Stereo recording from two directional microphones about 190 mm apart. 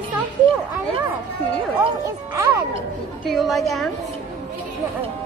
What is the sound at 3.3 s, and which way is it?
Speech, centre (ahead or behind).